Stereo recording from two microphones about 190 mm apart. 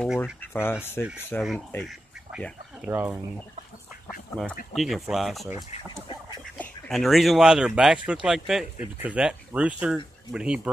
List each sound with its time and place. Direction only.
0.0 s speech: 5° left (ahead or behind)
2.8 s speech: 10° right (ahead or behind)
4.7 s speech: centre (ahead or behind)
5.9 s duck: 25° left (ahead or behind)
6.6 s speech: centre (ahead or behind)